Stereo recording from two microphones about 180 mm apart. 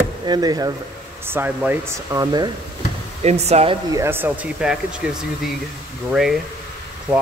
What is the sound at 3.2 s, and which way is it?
Speech, 35° right (ahead or behind).